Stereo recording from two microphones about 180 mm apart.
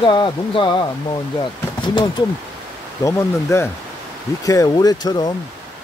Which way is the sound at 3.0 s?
15° left (ahead or behind).